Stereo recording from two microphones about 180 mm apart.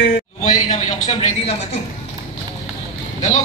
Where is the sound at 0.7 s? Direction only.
45° left (ahead or behind).